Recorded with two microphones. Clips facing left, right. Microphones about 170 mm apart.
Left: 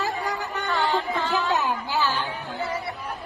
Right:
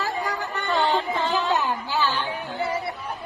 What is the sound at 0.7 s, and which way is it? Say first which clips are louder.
Music: right 2 dB; 20° right (ahead or behind).